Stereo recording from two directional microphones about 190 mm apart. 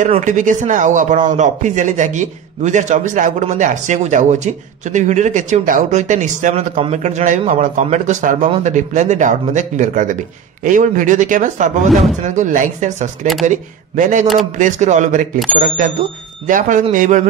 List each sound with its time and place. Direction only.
0.2 s speech: 40° right (ahead or behind)